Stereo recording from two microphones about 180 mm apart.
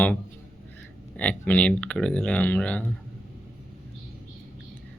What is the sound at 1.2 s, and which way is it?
Speech, 10° left (ahead or behind).